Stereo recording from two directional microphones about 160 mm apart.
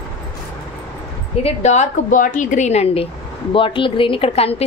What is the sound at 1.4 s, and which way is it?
A woman's voice, 45° left (ahead or behind).